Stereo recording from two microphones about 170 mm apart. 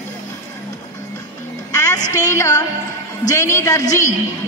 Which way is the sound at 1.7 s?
20° left (ahead or behind).